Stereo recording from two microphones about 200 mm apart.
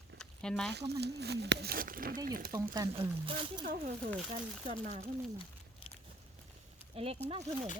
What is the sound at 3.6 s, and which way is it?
Speech, 40° right (ahead or behind).